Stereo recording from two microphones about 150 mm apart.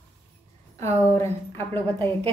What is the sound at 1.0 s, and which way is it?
A woman's voice, 15° left (ahead or behind).